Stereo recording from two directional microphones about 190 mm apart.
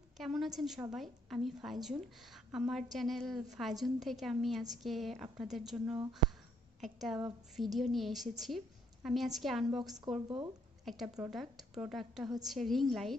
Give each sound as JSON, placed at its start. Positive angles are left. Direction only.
{"t": 0.2, "sound": "a woman's voice", "side_deg": 0}
{"t": 9.7, "sound": "a woman's voice", "side_deg": -20}
{"t": 10.9, "sound": "a woman's voice", "side_deg": 0}